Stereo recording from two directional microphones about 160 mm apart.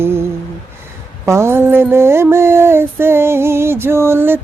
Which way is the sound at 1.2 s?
15° right (ahead or behind).